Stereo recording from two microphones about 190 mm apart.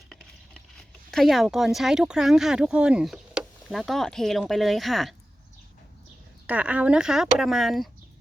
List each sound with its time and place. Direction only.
0.1 s a sound: centre (ahead or behind)
1.1 s speech: centre (ahead or behind)
6.5 s speech: 5° right (ahead or behind)